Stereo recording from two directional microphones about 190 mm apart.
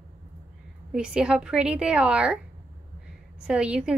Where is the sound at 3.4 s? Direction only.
5° right (ahead or behind).